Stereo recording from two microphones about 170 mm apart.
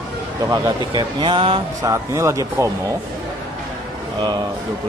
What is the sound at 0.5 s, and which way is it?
Speech, 25° right (ahead or behind).